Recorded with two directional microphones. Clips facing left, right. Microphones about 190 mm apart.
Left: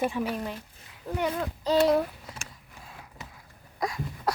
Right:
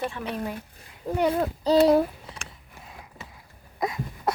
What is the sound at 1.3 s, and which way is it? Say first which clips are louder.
Speech: right 5 dB; 40° right (ahead or behind).